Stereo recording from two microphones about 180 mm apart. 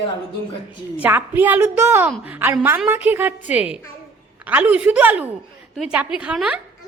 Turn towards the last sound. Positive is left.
turn(degrees=-5)  # may be behind; listen again after turning